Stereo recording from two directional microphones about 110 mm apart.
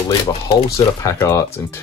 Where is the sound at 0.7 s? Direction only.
25° left (ahead or behind).